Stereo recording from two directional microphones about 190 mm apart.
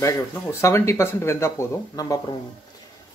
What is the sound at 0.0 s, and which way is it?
Speech, 15° left (ahead or behind).